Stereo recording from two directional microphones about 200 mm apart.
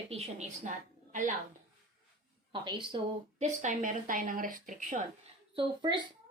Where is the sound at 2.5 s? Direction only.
25° right (ahead or behind).